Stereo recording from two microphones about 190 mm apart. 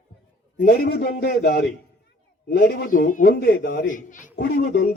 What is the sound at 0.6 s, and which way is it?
A man's voice, 55° left (ahead or behind).